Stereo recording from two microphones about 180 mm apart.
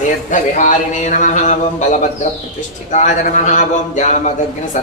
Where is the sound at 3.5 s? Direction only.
45° left (ahead or behind).